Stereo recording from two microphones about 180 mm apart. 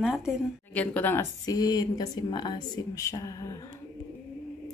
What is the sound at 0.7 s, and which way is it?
Speech, 10° left (ahead or behind).